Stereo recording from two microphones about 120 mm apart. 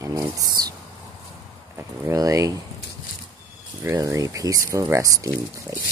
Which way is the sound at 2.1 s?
30° right (ahead or behind).